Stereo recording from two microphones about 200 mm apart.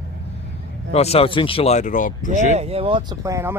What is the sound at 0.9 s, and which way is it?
Speech, 30° left (ahead or behind).